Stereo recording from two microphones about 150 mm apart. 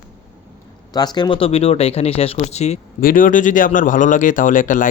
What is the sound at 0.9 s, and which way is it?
Speech, 25° left (ahead or behind).